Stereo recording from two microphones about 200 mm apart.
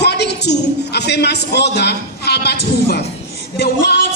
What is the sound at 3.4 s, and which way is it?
Music, 55° left (ahead or behind).